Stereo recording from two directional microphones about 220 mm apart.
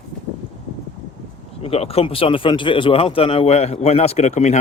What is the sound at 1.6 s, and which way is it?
Speech, 25° left (ahead or behind).